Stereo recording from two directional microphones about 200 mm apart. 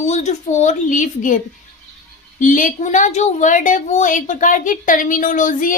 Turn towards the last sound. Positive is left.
turn(degrees=40)  # may be behind; listen again after turning